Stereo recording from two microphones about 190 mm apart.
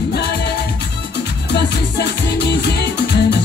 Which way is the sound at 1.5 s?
60° left (ahead or behind).